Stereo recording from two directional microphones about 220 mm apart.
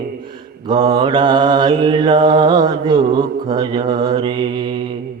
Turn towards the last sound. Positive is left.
turn(degrees=-20)  # may be behind; listen again after turning